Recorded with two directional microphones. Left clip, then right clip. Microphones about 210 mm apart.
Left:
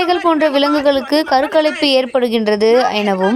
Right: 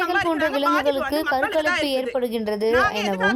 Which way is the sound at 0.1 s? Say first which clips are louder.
Left 8 dB; 30° left (ahead or behind).